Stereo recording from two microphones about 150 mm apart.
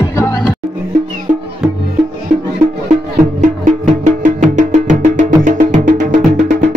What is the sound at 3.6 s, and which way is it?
Music, 55° right (ahead or behind).